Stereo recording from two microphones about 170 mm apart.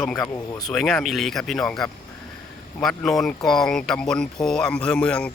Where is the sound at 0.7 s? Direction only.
Centre (ahead or behind).